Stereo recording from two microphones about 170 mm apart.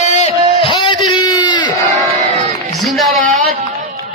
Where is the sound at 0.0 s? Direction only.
40° left (ahead or behind); by 1.7 s 25° left (ahead or behind).